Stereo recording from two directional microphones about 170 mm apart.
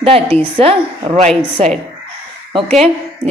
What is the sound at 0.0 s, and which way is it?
A woman's voice, 35° right (ahead or behind).